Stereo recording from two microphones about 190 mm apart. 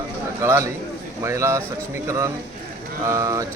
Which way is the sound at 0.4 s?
15° right (ahead or behind).